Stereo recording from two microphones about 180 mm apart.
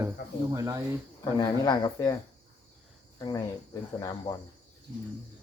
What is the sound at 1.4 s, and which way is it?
Speech, 25° left (ahead or behind).